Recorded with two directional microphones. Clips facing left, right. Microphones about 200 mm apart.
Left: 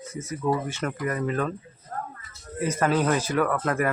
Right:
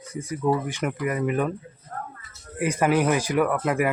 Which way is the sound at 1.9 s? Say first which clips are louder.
Left 1 dB; 35° left (ahead or behind).